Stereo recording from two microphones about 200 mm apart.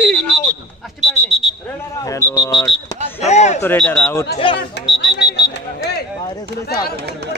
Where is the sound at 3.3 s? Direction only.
35° left (ahead or behind).